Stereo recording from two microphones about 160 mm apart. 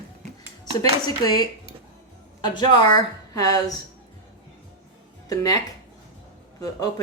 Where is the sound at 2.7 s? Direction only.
25° left (ahead or behind).